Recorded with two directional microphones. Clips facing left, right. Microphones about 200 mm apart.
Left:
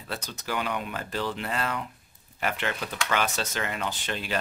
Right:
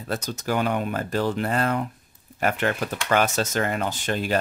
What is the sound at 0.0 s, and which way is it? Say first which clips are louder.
Speech: right 7 dB; 45° right (ahead or behind).